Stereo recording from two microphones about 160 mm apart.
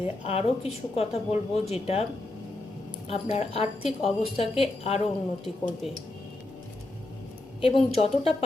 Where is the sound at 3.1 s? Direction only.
40° left (ahead or behind).